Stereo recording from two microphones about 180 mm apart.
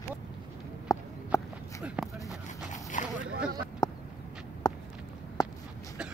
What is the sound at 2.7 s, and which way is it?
Dog, 45° left (ahead or behind).